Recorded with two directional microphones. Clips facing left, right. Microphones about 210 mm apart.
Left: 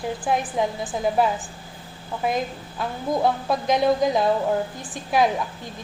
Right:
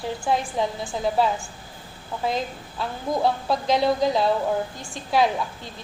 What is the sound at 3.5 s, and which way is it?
Speech, 15° left (ahead or behind).